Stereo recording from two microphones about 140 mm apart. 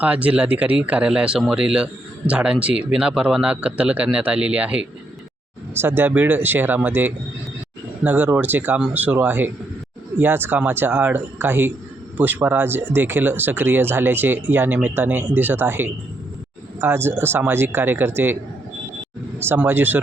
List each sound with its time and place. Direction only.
0.0 s speech: 10° right (ahead or behind)
19.4 s speech: 15° right (ahead or behind)